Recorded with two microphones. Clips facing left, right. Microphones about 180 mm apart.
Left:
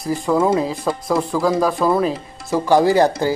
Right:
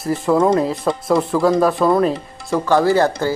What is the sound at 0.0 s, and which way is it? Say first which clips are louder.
Speech: right 2 dB; centre (ahead or behind).